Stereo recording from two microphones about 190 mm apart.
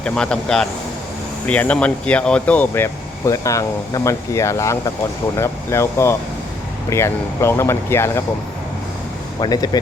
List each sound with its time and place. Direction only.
0.0 s a man's voice: 5° left (ahead or behind)
9.4 s speech: 20° left (ahead or behind)